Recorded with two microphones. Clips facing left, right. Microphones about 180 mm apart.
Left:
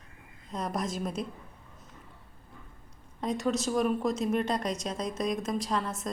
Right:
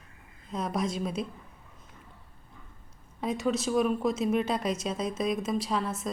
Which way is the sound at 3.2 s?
Centre (ahead or behind).